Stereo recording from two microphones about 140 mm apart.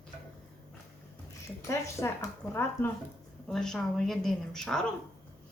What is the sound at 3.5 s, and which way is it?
A woman's voice, 5° left (ahead or behind).